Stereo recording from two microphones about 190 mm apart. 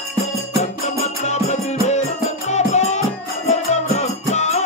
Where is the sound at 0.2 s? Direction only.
35° left (ahead or behind).